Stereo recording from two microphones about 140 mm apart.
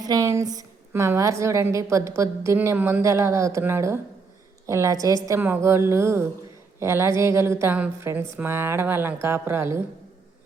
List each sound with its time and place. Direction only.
0.0 s a woman's voice: 25° right (ahead or behind)